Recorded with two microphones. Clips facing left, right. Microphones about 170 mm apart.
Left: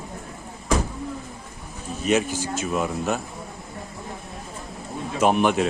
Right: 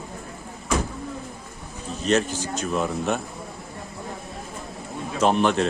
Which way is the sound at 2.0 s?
10° left (ahead or behind).